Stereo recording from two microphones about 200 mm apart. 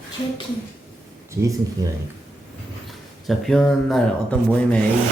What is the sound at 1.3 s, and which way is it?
Speech, 15° right (ahead or behind).